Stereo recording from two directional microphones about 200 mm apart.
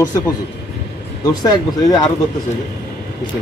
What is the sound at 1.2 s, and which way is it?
Speech, 20° left (ahead or behind).